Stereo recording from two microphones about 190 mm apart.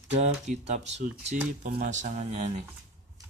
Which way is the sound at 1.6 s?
50° right (ahead or behind).